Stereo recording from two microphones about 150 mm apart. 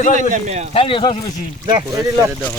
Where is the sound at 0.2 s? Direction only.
55° right (ahead or behind).